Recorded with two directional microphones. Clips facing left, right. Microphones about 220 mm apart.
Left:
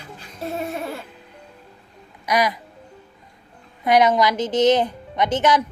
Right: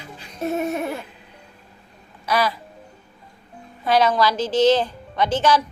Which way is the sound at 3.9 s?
20° left (ahead or behind).